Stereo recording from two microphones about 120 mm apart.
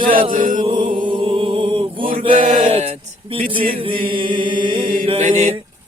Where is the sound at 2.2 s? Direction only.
90° right; by 5.2 s 45° right (ahead or behind).